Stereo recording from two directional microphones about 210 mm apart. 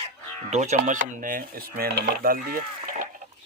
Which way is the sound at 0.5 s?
35° right (ahead or behind).